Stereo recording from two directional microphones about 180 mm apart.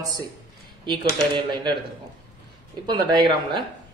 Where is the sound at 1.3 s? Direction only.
25° right (ahead or behind).